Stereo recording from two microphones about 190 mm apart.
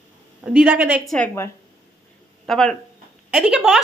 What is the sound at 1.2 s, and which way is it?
Speech, 15° left (ahead or behind).